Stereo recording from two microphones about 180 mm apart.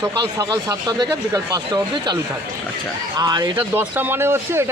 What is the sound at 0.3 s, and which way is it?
Speech, 20° right (ahead or behind).